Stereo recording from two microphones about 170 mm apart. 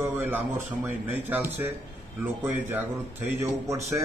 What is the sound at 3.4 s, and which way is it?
Speech, 15° right (ahead or behind).